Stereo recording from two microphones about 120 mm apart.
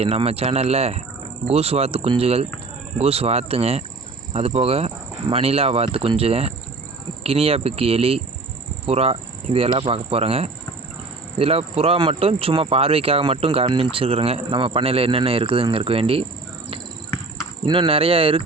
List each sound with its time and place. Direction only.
0.0 s cricket: 55° right (ahead or behind)
11.3 s speech: 55° right (ahead or behind)
17.7 s speech: 45° right (ahead or behind)